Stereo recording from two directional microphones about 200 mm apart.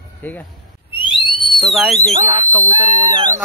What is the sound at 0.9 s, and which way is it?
Owl, 25° left (ahead or behind).